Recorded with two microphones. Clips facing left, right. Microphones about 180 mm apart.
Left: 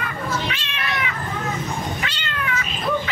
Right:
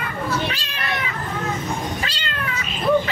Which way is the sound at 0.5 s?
35° right (ahead or behind).